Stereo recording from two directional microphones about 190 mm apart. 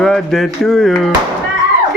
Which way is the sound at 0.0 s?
Centre (ahead or behind).